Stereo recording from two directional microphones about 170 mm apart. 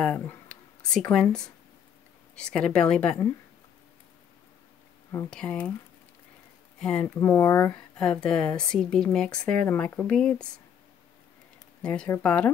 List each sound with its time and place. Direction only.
0.0 s speech: 5° left (ahead or behind)
5.3 s speech: 5° left (ahead or behind)
6.8 s speech: 5° left (ahead or behind)
7.2 s speech: 15° left (ahead or behind)
8.0 s speech: 5° left (ahead or behind)
11.8 s speech: 5° left (ahead or behind)